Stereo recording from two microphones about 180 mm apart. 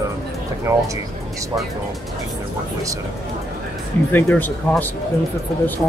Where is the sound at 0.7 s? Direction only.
15° right (ahead or behind).